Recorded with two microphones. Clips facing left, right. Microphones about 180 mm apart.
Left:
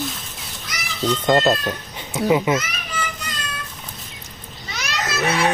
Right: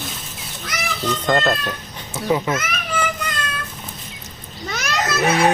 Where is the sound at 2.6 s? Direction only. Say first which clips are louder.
Right 5 dB; 55° right (ahead or behind).